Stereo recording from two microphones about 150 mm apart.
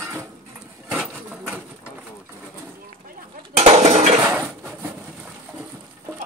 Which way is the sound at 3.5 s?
45° right (ahead or behind).